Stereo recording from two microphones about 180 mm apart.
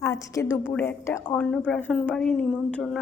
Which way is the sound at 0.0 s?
15° left (ahead or behind).